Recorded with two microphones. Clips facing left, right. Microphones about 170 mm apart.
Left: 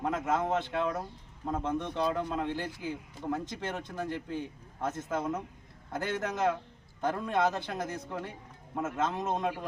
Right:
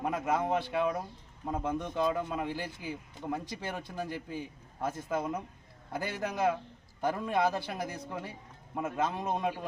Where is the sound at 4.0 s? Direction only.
10° right (ahead or behind).